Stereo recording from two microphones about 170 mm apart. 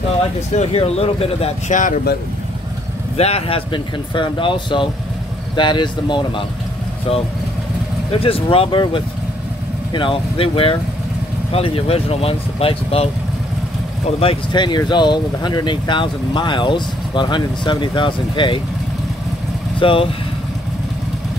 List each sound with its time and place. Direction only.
0.6 s speech: 35° left (ahead or behind)
1.8 s speech: 50° left (ahead or behind)
3.2 s speech: 35° left (ahead or behind)
8.1 s speech: 35° left (ahead or behind)
19.8 s speech: 30° left (ahead or behind)